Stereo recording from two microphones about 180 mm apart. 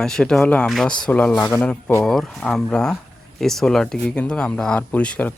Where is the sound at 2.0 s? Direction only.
Centre (ahead or behind).